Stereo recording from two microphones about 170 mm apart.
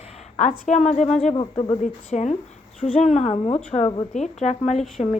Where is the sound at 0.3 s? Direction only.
40° left (ahead or behind).